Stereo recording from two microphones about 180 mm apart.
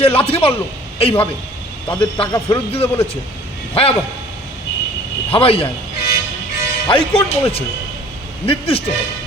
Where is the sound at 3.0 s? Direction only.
35° left (ahead or behind).